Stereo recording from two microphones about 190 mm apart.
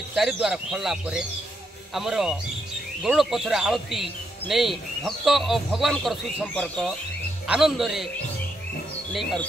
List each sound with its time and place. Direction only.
0.1 s speech: centre (ahead or behind)